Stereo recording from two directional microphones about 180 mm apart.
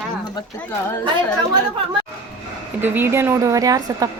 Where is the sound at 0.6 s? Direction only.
10° left (ahead or behind).